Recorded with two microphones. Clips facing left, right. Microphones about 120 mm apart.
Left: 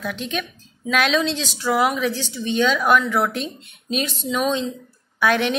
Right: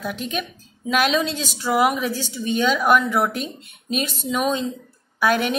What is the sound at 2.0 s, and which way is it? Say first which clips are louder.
Speech: left 1 dB; 45° right (ahead or behind).